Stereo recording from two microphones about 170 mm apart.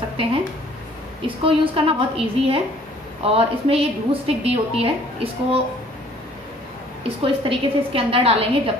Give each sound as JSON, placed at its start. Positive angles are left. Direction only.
{"t": 1.2, "sound": "a woman's voice", "side_deg": -30}
{"t": 7.0, "sound": "a woman's voice", "side_deg": -35}